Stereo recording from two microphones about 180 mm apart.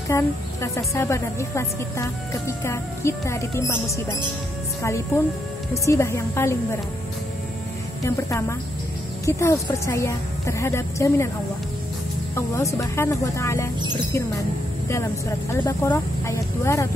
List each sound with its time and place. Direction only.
0.1 s a woman's voice: 15° left (ahead or behind)
8.0 s a woman's voice: 15° left (ahead or behind)
12.4 s a woman's voice: 15° left (ahead or behind)
15.6 s a woman's voice: 15° left (ahead or behind)